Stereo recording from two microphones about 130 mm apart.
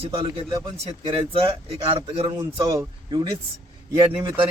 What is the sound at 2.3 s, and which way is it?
Speech, 25° right (ahead or behind).